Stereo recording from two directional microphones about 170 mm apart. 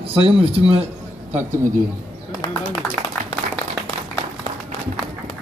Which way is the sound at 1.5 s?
50° right (ahead or behind).